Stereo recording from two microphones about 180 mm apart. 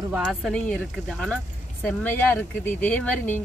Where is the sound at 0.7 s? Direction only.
5° left (ahead or behind).